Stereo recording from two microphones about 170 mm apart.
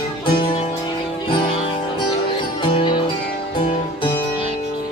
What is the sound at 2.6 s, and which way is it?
Music, 30° left (ahead or behind).